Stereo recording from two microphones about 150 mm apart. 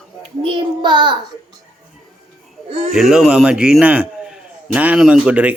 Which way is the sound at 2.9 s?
5° right (ahead or behind).